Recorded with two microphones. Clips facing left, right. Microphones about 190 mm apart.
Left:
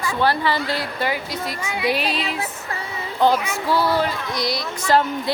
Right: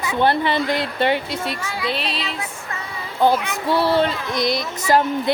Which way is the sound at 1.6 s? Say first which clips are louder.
Left 1 dB; 20° left (ahead or behind).